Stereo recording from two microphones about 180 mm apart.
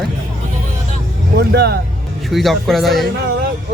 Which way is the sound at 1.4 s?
65° right (ahead or behind).